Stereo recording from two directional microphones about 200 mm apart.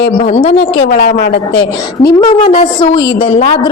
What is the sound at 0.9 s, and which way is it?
Speech, 45° left (ahead or behind).